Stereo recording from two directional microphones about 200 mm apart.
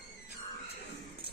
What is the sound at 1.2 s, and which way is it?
Clip-clop, 50° left (ahead or behind).